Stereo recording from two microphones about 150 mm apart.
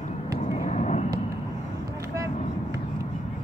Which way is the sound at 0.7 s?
50° left (ahead or behind).